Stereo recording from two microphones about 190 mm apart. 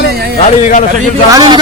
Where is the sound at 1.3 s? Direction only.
20° right (ahead or behind).